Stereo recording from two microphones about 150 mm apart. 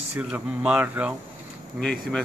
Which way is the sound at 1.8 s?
5° left (ahead or behind).